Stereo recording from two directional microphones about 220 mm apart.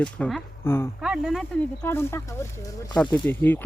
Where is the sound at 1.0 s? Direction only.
Centre (ahead or behind).